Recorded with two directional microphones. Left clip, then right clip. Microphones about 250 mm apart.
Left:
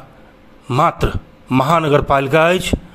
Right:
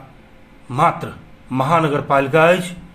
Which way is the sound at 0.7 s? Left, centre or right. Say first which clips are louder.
Left 2 dB; left.